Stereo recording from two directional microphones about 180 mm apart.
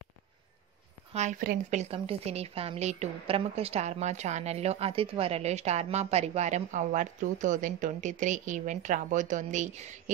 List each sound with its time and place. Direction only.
1.1 s a woman's voice: 45° right (ahead or behind)